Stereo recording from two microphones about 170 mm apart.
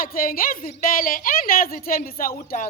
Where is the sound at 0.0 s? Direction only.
55° left (ahead or behind).